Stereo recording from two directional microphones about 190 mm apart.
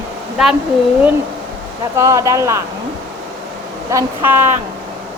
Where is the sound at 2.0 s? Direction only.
15° right (ahead or behind).